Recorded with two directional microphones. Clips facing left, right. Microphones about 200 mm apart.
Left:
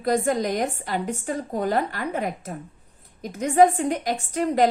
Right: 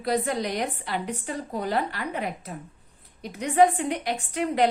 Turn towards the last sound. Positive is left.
turn(degrees=40)  # may be behind; listen again after turning